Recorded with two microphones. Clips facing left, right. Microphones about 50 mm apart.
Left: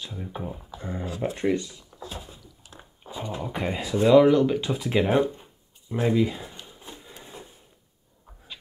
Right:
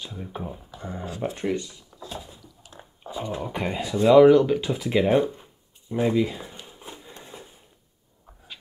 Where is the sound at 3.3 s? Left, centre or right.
Centre.